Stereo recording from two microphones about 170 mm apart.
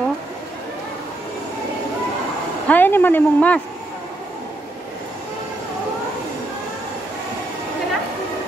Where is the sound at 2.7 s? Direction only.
10° left (ahead or behind).